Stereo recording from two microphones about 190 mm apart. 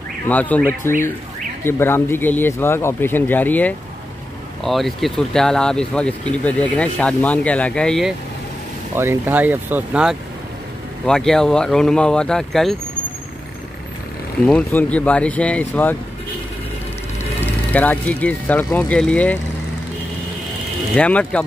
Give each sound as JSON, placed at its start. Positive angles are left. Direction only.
{"t": 0.3, "sound": "speech", "side_deg": 10}
{"t": 8.9, "sound": "speech", "side_deg": -15}
{"t": 11.1, "sound": "speech", "side_deg": 5}
{"t": 14.4, "sound": "speech", "side_deg": 5}
{"t": 17.4, "sound": "speech", "side_deg": 10}
{"t": 20.9, "sound": "speech", "side_deg": 5}